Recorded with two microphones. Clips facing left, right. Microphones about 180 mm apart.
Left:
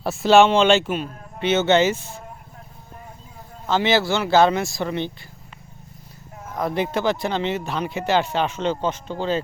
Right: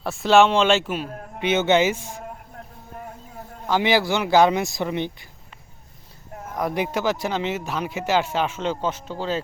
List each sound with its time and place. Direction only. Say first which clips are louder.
0.0 s speech: left 2 dB; centre (ahead or behind)
1.0 s speech: right 1 dB; 60° right (ahead or behind)
1.4 s speech: left 1 dB; 10° right (ahead or behind)
3.7 s speech: left 1 dB; 15° right (ahead or behind)
6.5 s speech: left 1 dB; 15° right (ahead or behind)